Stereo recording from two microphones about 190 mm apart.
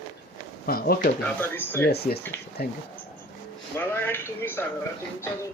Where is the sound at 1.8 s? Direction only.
55° left (ahead or behind).